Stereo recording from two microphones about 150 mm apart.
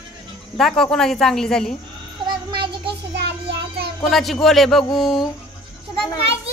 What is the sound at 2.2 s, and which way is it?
Music, 35° right (ahead or behind).